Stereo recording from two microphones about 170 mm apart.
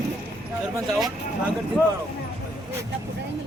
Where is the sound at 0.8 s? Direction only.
Centre (ahead or behind).